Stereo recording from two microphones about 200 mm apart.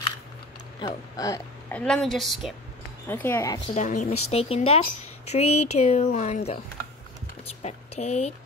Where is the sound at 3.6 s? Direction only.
35° left (ahead or behind).